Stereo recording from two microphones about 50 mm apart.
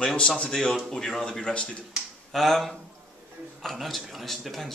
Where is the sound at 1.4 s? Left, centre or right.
Left.